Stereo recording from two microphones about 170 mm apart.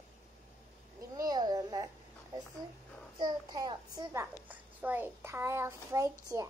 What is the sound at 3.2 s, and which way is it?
A child's voice, 25° right (ahead or behind).